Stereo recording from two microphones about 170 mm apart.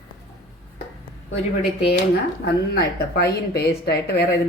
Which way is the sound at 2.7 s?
70° left (ahead or behind).